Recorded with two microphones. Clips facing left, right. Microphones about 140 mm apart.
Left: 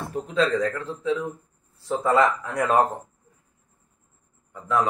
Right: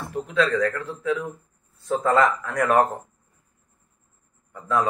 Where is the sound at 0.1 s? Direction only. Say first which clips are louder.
Even; 40° left (ahead or behind).